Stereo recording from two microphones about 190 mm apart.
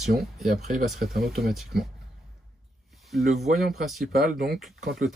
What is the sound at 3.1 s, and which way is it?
A man's voice, centre (ahead or behind).